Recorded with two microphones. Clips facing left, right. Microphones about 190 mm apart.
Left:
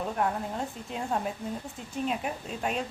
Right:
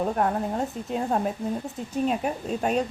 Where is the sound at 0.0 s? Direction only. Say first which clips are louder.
Right 5 dB; 45° right (ahead or behind).